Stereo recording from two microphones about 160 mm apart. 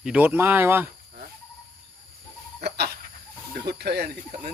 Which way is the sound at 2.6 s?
90° right.